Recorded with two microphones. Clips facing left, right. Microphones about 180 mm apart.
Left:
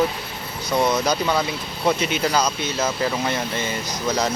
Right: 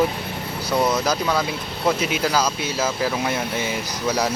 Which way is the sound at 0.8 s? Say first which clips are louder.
Left 1 dB; 5° right (ahead or behind).